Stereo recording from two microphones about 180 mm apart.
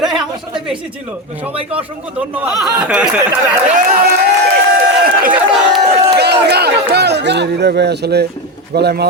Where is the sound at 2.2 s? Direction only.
10° right (ahead or behind).